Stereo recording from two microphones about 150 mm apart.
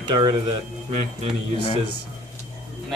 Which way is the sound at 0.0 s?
30° right (ahead or behind).